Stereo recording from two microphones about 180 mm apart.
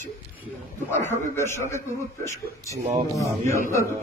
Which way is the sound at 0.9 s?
10° left (ahead or behind).